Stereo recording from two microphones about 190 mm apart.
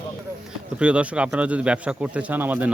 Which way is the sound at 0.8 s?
5° right (ahead or behind).